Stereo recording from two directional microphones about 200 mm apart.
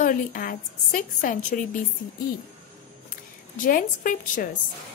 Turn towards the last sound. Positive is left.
turn(degrees=40)  # may be behind; listen again after turning